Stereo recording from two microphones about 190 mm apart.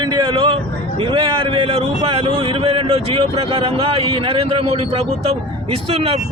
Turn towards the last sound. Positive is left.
turn(degrees=-30)  # may be behind; listen again after turning